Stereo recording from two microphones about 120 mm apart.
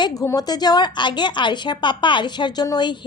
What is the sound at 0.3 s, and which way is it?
A woman's voice, 35° left (ahead or behind).